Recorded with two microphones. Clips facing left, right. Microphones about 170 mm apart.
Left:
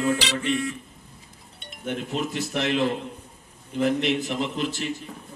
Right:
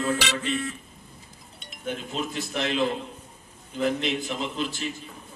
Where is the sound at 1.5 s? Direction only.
65° left (ahead or behind).